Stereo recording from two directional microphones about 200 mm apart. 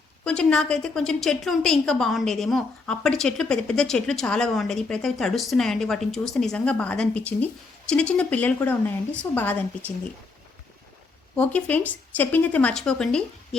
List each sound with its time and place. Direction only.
0.3 s a woman's voice: 5° left (ahead or behind)
11.3 s speech: 5° left (ahead or behind)